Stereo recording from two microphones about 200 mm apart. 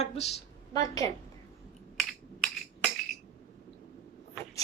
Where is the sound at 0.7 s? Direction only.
20° left (ahead or behind).